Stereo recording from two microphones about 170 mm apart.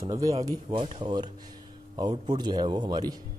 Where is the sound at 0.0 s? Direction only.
20° right (ahead or behind).